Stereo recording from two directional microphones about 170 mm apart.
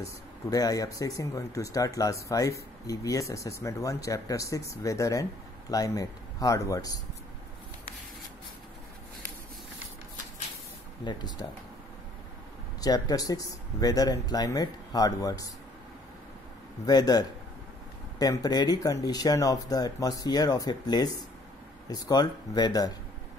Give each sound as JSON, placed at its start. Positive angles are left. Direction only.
{"t": 0.0, "sound": "speech", "side_deg": 20}
{"t": 11.1, "sound": "speech", "side_deg": 25}
{"t": 12.8, "sound": "speech", "side_deg": 20}
{"t": 16.8, "sound": "speech", "side_deg": 25}